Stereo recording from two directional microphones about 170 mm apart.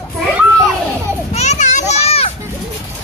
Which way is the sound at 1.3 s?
40° left (ahead or behind).